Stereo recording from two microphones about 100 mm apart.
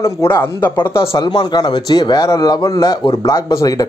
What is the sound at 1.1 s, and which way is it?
A man's voice, 50° left (ahead or behind).